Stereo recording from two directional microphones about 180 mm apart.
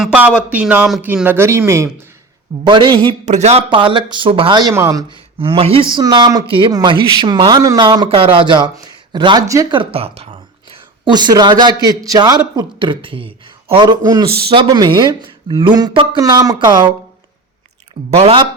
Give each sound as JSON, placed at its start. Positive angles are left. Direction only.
{"t": 0.0, "sound": "speech", "side_deg": -5}
{"t": 2.6, "sound": "speech", "side_deg": -25}
{"t": 3.2, "sound": "speech", "side_deg": -40}
{"t": 18.2, "sound": "speech", "side_deg": -30}